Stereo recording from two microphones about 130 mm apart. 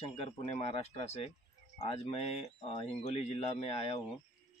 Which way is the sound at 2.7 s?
40° left (ahead or behind).